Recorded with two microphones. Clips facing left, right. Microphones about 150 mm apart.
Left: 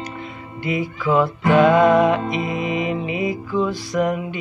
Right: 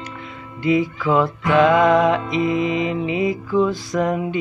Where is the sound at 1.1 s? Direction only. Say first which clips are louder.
Left 1 dB; 10° left (ahead or behind).